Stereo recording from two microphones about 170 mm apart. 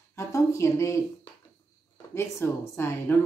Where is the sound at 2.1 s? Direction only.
15° left (ahead or behind).